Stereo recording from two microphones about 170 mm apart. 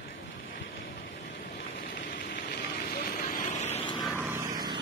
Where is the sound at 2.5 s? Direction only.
70° left (ahead or behind).